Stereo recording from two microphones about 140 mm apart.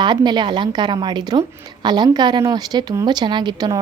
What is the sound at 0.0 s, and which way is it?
A woman's voice, 30° right (ahead or behind).